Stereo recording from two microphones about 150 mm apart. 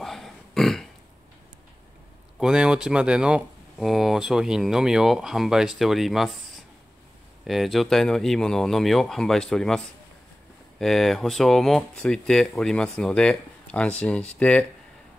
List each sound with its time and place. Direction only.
0.0 s a sound: centre (ahead or behind)
2.3 s speech: 5° right (ahead or behind)
7.4 s speech: centre (ahead or behind)
10.8 s speech: centre (ahead or behind)